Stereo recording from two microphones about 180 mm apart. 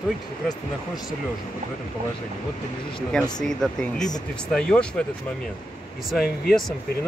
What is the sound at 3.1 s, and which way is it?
Speech, 5° left (ahead or behind).